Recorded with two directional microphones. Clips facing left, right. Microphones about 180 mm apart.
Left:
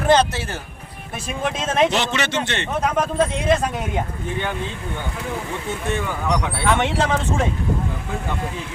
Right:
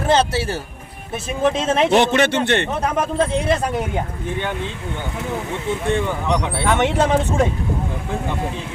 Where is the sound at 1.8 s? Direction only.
55° right (ahead or behind).